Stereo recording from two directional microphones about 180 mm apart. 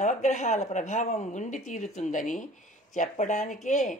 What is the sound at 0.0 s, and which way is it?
A woman's voice, 40° left (ahead or behind).